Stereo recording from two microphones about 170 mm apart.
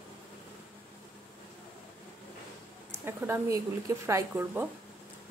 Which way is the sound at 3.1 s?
15° right (ahead or behind).